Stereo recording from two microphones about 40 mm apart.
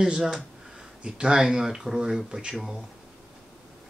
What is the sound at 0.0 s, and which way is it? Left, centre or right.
Speech, centre.